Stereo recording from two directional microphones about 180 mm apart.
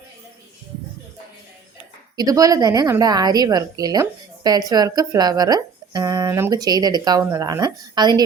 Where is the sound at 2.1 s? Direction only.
20° right (ahead or behind).